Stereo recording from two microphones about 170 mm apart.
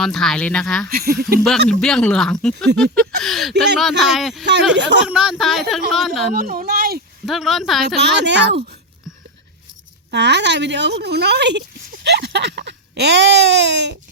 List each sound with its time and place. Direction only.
0.0 s speech: 5° left (ahead or behind)
0.9 s speech: 60° right (ahead or behind)
1.8 s speech: 5° left (ahead or behind)
4.8 s speech: 90° right
5.0 s speech: 5° right (ahead or behind)
6.3 s speech: 60° right (ahead or behind)
7.3 s speech: centre (ahead or behind)
8.0 s speech: 90° right
10.1 s speech: 90° right